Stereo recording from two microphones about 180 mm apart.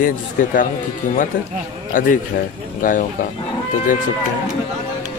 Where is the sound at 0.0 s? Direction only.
50° left (ahead or behind).